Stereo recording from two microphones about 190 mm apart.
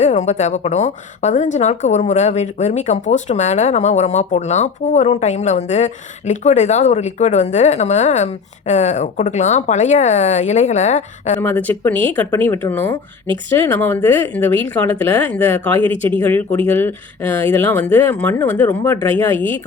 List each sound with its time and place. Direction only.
0.0 s a woman's voice: 40° left (ahead or behind)
11.3 s speech: 10° left (ahead or behind)
15.8 s speech: 25° right (ahead or behind)
16.2 s speech: 10° left (ahead or behind)